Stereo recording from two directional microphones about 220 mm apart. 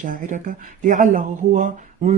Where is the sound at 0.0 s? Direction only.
35° right (ahead or behind).